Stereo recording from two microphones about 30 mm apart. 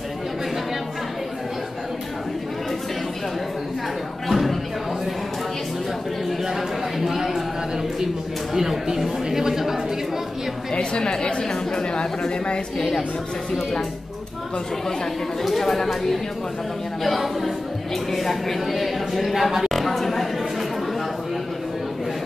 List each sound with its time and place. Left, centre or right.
4.3 s music: centre
7.0 s a sound: centre
8.5 s speech: centre
10.7 s a woman's voice: left
15.7 s a woman's voice: centre